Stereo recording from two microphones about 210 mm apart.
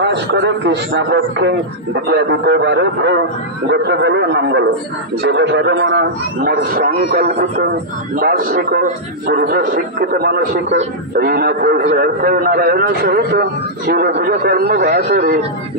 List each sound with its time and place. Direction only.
0.0 s a man's voice: 55° right (ahead or behind)